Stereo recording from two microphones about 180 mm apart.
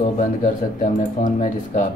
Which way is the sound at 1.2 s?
45° left (ahead or behind).